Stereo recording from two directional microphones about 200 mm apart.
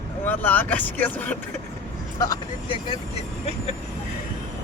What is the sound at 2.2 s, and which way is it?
Speech, 20° left (ahead or behind).